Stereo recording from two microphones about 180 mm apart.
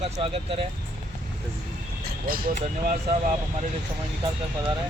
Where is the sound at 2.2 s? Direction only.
55° right (ahead or behind).